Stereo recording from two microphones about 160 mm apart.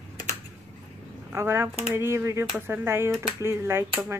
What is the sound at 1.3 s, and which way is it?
Speech, 15° right (ahead or behind).